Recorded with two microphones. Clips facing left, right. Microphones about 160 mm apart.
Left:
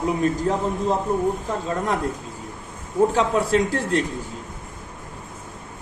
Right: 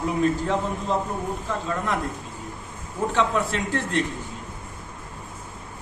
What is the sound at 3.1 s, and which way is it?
Speech, 35° left (ahead or behind).